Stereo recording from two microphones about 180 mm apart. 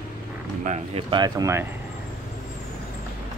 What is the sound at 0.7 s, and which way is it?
Speech, 30° right (ahead or behind).